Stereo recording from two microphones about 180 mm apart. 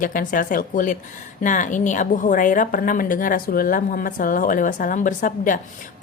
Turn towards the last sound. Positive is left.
turn(degrees=50)  # may be behind; listen again after turning